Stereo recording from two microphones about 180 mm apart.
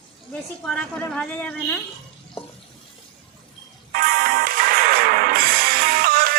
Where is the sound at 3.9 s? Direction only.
55° right (ahead or behind).